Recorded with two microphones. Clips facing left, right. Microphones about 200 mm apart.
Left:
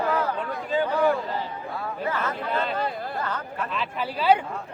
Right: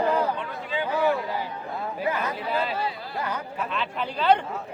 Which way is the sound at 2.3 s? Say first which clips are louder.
Even; 5° right (ahead or behind).